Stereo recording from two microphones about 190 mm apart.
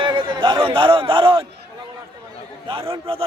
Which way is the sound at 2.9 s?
30° right (ahead or behind).